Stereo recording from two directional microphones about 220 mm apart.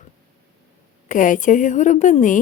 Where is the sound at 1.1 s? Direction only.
35° left (ahead or behind).